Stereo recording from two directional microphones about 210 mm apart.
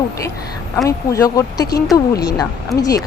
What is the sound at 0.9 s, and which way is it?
Speech, 15° left (ahead or behind).